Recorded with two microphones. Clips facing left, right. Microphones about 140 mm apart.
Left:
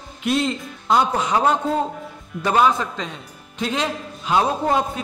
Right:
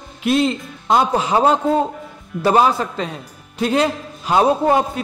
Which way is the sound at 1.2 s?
30° right (ahead or behind).